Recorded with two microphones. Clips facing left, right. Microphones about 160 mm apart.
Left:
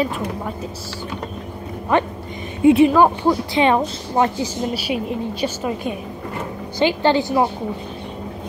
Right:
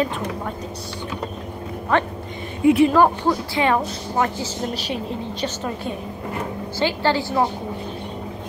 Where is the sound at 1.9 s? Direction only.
15° left (ahead or behind).